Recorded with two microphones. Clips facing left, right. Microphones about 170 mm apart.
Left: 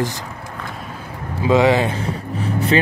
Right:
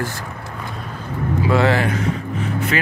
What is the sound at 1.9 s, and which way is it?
Music, 35° left (ahead or behind).